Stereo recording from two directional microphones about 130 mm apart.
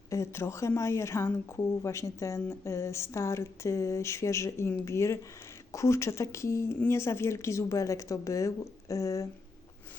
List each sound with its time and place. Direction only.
0.1 s speech: 20° left (ahead or behind)